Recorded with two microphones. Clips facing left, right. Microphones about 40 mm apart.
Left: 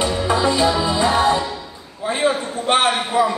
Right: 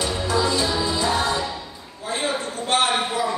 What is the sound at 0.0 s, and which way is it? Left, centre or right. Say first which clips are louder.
Music: left 4 dB; left.